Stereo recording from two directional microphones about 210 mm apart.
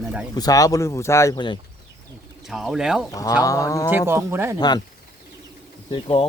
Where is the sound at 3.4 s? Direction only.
15° left (ahead or behind).